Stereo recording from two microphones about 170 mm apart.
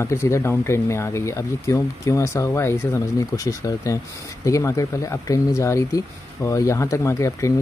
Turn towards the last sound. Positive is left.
turn(degrees=15)  # may be behind; listen again after turning